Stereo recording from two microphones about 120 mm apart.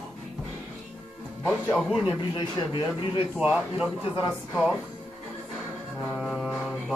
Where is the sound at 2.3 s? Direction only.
35° left (ahead or behind).